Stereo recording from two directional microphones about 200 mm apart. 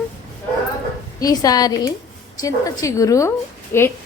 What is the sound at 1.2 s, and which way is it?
A woman's voice, 20° left (ahead or behind).